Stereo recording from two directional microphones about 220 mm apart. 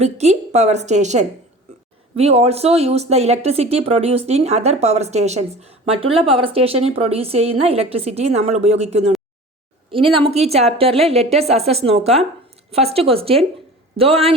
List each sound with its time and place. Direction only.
0.0 s a woman's voice: 30° right (ahead or behind)